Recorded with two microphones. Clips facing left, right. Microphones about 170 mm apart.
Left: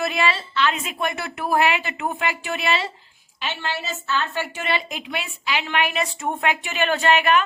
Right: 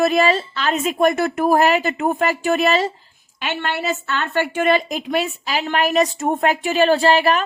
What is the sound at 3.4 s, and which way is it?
A woman's voice, 60° right (ahead or behind).